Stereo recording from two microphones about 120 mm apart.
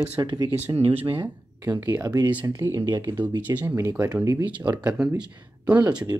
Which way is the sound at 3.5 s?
15° right (ahead or behind).